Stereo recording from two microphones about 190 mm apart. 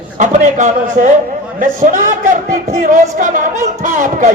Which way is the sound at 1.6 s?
45° right (ahead or behind).